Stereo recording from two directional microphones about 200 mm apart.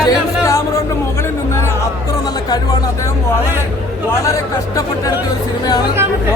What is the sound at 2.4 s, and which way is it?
Speech, 20° left (ahead or behind).